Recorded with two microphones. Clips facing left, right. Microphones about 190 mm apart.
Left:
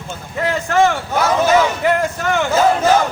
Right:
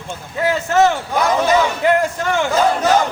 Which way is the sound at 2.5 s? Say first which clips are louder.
Left 3 dB; 5° left (ahead or behind).